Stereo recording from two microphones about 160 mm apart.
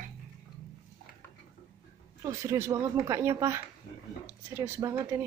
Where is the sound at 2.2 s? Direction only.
20° right (ahead or behind).